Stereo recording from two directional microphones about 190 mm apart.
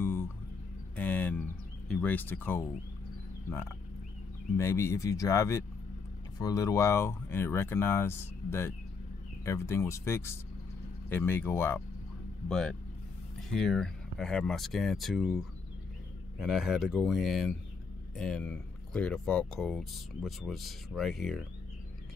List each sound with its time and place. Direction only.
0.0 s music: 10° left (ahead or behind)
0.9 s a sound: 10° left (ahead or behind)
1.9 s speech: 5° left (ahead or behind)
3.4 s frog: 15° left (ahead or behind)
4.6 s speech: 15° left (ahead or behind)